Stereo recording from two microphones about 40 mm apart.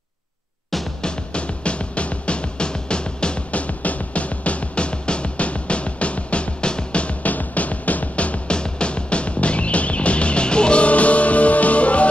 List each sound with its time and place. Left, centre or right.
1.0 s music: left
3.5 s music: left
8.5 s music: left